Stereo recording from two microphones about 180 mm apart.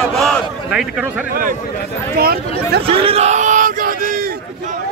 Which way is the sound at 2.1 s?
60° right (ahead or behind).